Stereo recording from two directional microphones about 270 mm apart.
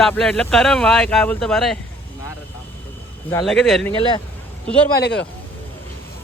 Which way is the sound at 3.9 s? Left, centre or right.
Centre.